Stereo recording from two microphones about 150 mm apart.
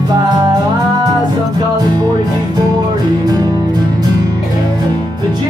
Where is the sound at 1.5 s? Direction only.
25° right (ahead or behind).